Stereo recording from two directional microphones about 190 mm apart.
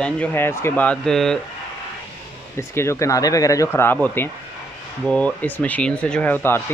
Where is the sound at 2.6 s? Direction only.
15° left (ahead or behind).